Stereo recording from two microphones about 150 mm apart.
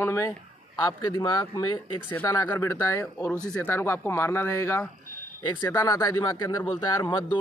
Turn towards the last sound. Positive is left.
turn(degrees=30)  # may be behind; listen again after turning